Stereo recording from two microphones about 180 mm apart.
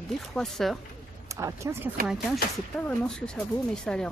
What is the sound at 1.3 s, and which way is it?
Speech, 15° right (ahead or behind).